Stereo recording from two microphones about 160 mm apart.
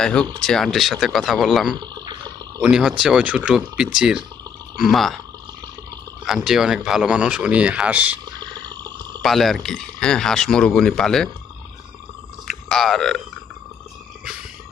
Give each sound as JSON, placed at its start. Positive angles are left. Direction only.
{"t": 0.0, "sound": "speech", "side_deg": 5}
{"t": 1.7, "sound": "water", "side_deg": -25}
{"t": 2.6, "sound": "speech", "side_deg": -5}
{"t": 6.2, "sound": "speech", "side_deg": 0}
{"t": 8.4, "sound": "a sound", "side_deg": -25}
{"t": 9.2, "sound": "speech", "side_deg": 0}
{"t": 12.5, "sound": "speech", "side_deg": 5}